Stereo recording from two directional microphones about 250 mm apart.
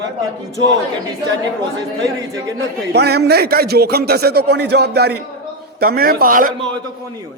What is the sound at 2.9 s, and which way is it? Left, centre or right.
Speech, right.